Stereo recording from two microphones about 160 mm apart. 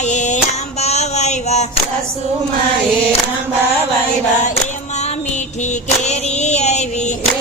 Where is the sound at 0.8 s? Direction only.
45° left (ahead or behind).